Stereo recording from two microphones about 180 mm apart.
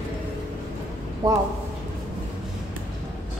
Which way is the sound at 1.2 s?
20° right (ahead or behind).